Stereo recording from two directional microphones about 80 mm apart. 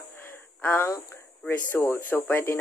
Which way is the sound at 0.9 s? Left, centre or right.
Left.